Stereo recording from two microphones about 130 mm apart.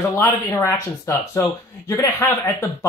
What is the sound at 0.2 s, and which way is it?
Speech, 20° left (ahead or behind).